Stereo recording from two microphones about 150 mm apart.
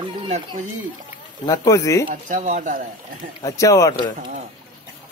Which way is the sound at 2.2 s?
60° right (ahead or behind).